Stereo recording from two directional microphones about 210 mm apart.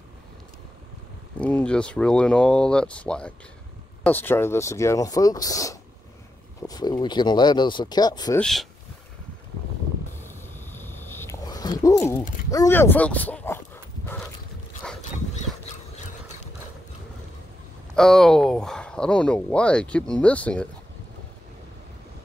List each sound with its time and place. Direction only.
1.4 s speech: 5° left (ahead or behind)
8.4 s speech: centre (ahead or behind)
10.2 s a sound: 10° left (ahead or behind)
17.9 s speech: centre (ahead or behind)